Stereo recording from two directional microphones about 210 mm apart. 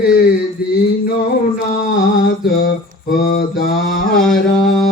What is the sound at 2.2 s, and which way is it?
Mantra, 45° left (ahead or behind).